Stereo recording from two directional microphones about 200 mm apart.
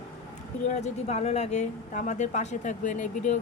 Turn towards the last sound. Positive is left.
turn(degrees=35)  # may be behind; listen again after turning